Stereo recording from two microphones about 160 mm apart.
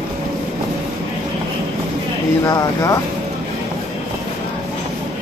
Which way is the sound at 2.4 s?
20° left (ahead or behind).